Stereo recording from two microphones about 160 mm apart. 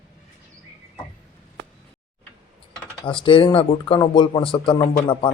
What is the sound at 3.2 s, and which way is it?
Speech, 30° left (ahead or behind).